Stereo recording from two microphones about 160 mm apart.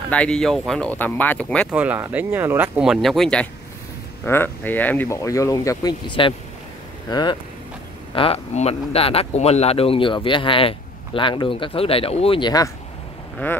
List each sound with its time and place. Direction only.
0.1 s speech: 5° left (ahead or behind)
1.7 s speech: 10° right (ahead or behind); by 12.7 s 25° left (ahead or behind)
13.4 s speech: 10° left (ahead or behind)